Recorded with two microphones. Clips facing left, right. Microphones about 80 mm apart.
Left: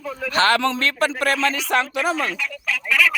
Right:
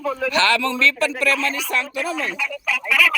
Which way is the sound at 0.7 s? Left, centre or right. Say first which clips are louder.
Right 1 dB; left.